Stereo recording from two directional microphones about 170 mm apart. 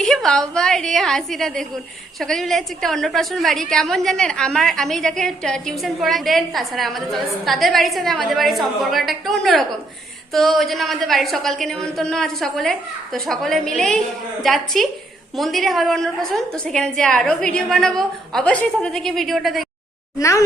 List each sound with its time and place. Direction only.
0.0 s a sound: 5° left (ahead or behind)
0.5 s a woman's voice: 5° left (ahead or behind)
20.1 s speech: 20° left (ahead or behind)